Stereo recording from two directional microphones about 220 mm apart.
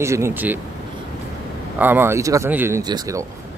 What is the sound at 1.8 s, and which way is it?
Speech, 10° right (ahead or behind).